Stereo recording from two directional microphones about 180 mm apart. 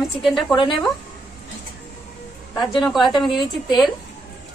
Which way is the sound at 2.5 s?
Centre (ahead or behind).